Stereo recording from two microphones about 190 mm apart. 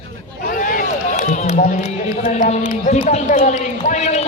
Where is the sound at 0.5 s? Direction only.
45° left (ahead or behind).